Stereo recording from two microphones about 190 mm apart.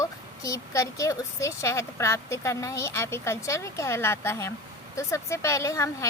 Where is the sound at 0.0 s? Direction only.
15° left (ahead or behind).